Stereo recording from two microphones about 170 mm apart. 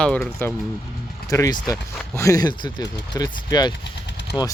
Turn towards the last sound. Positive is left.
turn(degrees=80)